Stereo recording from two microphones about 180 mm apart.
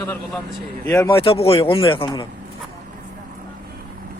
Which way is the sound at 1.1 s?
30° left (ahead or behind).